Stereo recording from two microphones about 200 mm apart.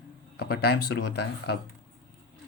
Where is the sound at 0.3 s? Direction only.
55° left (ahead or behind).